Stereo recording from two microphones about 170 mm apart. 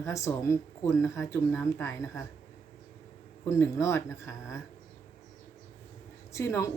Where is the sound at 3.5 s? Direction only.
15° left (ahead or behind).